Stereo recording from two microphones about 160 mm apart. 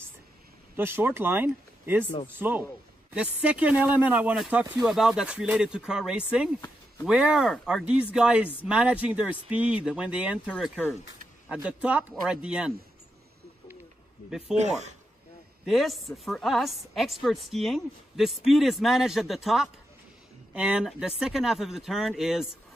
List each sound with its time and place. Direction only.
0.7 s a woman's voice: 15° right (ahead or behind)
14.5 s speech: 45° right (ahead or behind)
15.6 s a woman's voice: centre (ahead or behind)